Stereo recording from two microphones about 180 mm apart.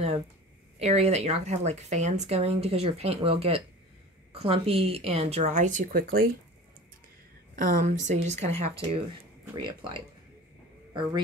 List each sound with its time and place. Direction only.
0.7 s speech: 35° right (ahead or behind); by 6.3 s 55° right (ahead or behind)
7.5 s speech: 50° right (ahead or behind); by 10.0 s 25° right (ahead or behind)